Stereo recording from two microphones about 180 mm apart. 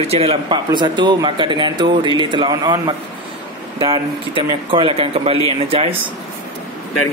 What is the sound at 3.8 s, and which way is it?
Speech, 25° right (ahead or behind).